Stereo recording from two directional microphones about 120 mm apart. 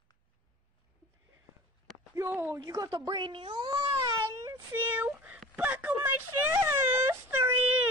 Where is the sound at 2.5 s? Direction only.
30° right (ahead or behind).